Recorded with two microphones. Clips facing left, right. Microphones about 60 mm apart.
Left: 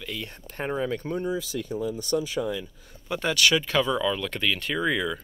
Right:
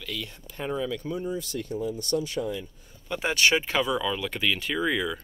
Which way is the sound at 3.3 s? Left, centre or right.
Right.